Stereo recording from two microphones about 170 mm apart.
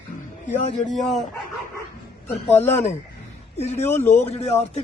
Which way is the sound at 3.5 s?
40° left (ahead or behind).